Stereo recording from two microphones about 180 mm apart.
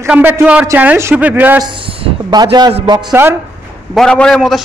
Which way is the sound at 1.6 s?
25° right (ahead or behind).